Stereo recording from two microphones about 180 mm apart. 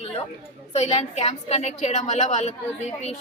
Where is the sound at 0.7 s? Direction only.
35° left (ahead or behind).